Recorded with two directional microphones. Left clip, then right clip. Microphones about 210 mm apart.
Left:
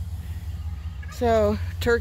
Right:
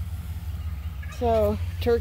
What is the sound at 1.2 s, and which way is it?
Speech, 20° left (ahead or behind).